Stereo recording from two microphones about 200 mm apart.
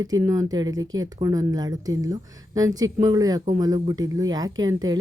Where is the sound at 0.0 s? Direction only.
15° right (ahead or behind).